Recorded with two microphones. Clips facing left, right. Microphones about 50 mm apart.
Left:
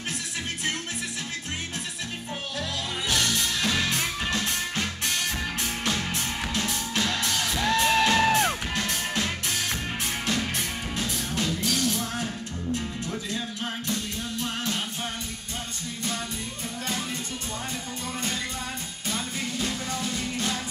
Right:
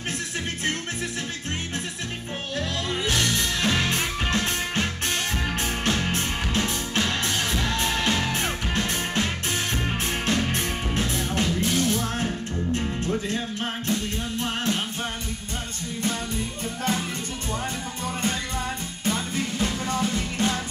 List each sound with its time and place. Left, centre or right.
3.6 s music: right
8.1 s music: left
8.4 s music: right
19.6 s music: right